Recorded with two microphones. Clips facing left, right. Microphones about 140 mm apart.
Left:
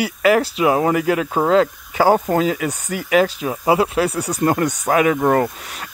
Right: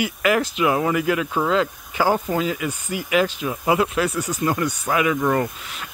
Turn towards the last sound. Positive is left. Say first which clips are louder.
# left 4 dB
turn(degrees=40)  # may be behind; listen again after turning